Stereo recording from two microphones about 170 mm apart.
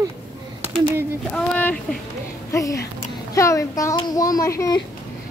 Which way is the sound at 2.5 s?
20° left (ahead or behind).